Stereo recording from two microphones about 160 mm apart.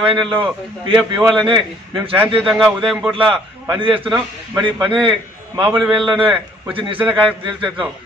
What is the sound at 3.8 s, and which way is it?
A man's voice, 35° right (ahead or behind).